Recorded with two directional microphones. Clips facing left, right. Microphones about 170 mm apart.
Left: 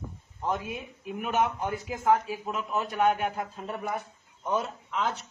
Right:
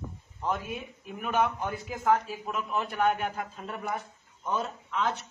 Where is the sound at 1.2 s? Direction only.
15° left (ahead or behind).